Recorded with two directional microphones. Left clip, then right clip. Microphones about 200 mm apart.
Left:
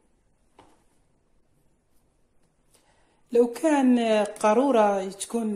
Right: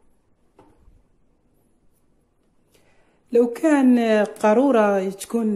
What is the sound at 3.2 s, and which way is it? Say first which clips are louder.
Speech: right 4 dB; 5° right (ahead or behind).